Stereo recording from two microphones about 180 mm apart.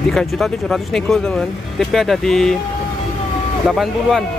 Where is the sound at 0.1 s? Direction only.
Centre (ahead or behind).